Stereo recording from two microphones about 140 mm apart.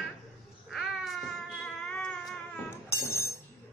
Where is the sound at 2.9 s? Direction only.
20° left (ahead or behind).